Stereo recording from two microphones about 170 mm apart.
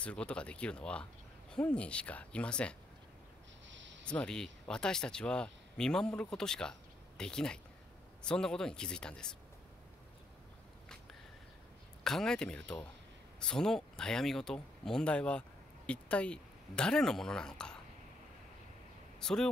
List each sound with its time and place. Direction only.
0.0 s speech: 5° left (ahead or behind)
3.6 s a sound: 90° right
4.0 s speech: 5° left (ahead or behind)
12.0 s speech: 5° left (ahead or behind)
19.1 s speech: 5° left (ahead or behind)